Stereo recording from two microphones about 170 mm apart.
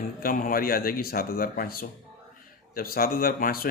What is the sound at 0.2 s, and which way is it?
Speech, 55° left (ahead or behind).